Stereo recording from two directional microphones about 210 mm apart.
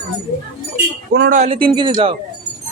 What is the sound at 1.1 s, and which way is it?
Speech, 50° right (ahead or behind).